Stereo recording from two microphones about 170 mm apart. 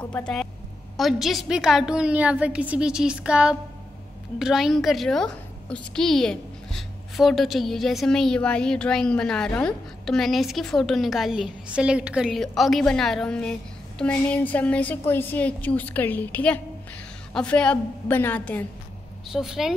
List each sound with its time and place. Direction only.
0.1 s a woman's voice: 5° left (ahead or behind)
19.3 s a woman's voice: centre (ahead or behind)